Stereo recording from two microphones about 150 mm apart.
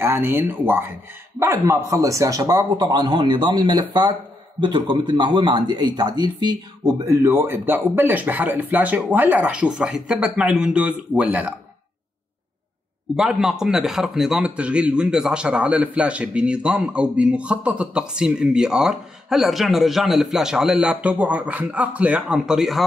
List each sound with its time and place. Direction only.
0.0 s speech: 15° right (ahead or behind)
7.1 s speech: 20° right (ahead or behind)
13.1 s a man's voice: 5° right (ahead or behind)